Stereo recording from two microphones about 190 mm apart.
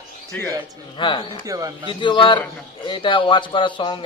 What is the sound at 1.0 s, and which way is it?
Speech, 25° left (ahead or behind).